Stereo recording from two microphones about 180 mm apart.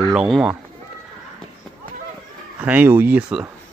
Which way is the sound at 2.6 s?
10° right (ahead or behind).